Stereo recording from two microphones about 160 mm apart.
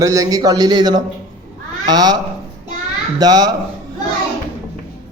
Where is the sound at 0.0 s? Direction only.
20° right (ahead or behind).